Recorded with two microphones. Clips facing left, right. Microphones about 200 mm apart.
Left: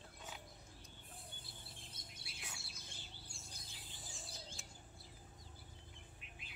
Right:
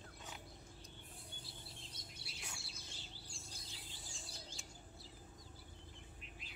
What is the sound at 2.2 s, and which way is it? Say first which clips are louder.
Bird: right 2 dB; 55° left (ahead or behind).